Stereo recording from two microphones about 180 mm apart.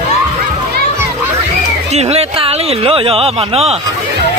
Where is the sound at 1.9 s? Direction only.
35° right (ahead or behind).